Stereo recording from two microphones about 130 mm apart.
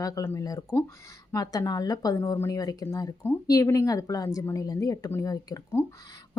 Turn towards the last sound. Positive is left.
turn(degrees=25)  # may be behind; listen again after turning